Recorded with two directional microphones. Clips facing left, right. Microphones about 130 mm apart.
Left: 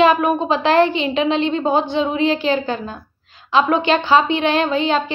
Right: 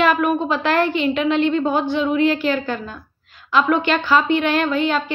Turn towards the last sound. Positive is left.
turn(degrees=30)  # may be behind; listen again after turning